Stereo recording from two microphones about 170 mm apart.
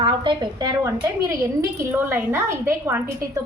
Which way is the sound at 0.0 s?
30° right (ahead or behind).